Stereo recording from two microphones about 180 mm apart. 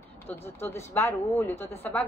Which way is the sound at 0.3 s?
15° left (ahead or behind).